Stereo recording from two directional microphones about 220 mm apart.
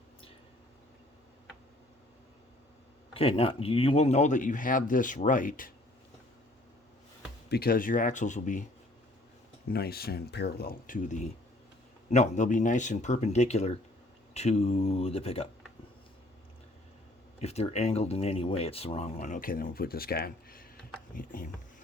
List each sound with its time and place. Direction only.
3.1 s a man's voice: 25° left (ahead or behind)
7.5 s a man's voice: 40° left (ahead or behind)
9.6 s a man's voice: 45° left (ahead or behind); by 15.4 s 25° left (ahead or behind)
17.4 s a man's voice: 30° left (ahead or behind)